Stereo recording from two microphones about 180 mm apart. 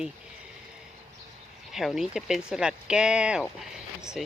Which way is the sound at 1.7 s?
Centre (ahead or behind).